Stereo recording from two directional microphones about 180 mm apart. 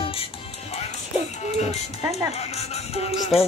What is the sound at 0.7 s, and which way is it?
Speech, 40° left (ahead or behind).